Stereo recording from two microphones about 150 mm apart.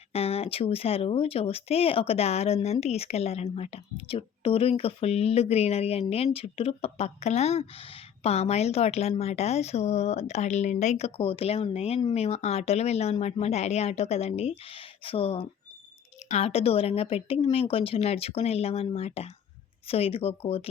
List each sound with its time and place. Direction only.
0.1 s a woman's voice: 40° left (ahead or behind)